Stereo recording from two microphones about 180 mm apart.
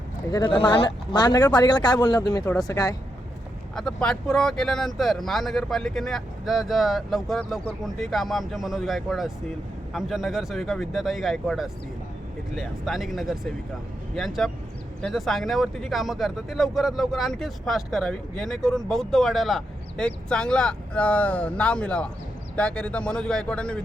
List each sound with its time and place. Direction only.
0.5 s speech: 30° left (ahead or behind)
3.8 s speech: 5° left (ahead or behind)